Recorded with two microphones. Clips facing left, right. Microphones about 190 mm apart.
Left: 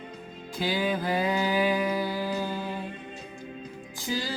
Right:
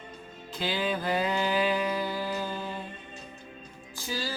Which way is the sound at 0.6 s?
15° left (ahead or behind).